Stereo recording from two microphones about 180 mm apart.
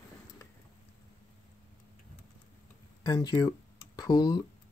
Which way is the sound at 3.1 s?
20° left (ahead or behind).